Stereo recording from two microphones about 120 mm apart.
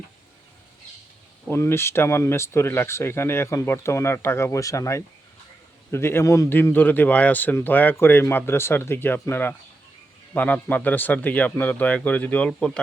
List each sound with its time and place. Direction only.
1.5 s a man's voice: 20° left (ahead or behind)